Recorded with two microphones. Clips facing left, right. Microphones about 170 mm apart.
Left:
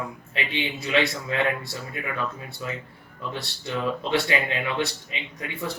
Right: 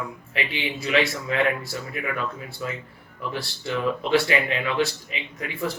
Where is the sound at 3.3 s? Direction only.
20° left (ahead or behind).